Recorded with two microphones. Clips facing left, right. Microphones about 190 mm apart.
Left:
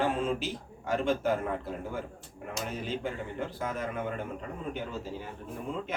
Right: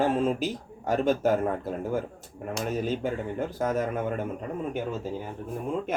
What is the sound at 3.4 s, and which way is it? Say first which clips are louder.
Speech: right 7 dB; 45° right (ahead or behind).